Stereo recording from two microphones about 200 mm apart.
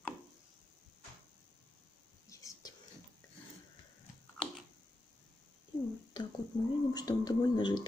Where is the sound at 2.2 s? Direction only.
15° left (ahead or behind).